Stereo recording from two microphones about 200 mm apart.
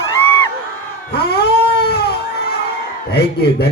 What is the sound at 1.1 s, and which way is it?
Cat, 55° left (ahead or behind).